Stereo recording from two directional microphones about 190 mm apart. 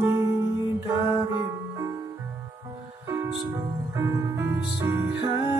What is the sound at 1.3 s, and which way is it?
Music, 15° right (ahead or behind).